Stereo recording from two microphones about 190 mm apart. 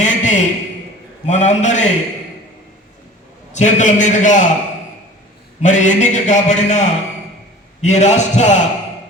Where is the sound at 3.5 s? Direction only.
40° left (ahead or behind).